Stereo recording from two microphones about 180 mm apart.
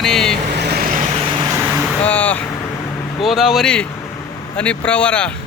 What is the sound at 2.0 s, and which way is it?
Speech, 10° left (ahead or behind).